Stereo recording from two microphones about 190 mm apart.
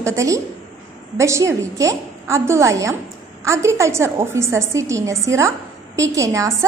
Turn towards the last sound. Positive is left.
turn(degrees=-15)  # may be behind; listen again after turning